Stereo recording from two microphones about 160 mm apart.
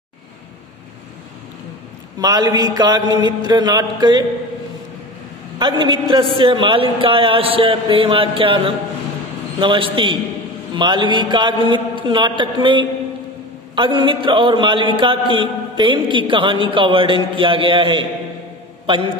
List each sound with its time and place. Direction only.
2.1 s a man's voice: 25° right (ahead or behind)
5.6 s a man's voice: 30° right (ahead or behind)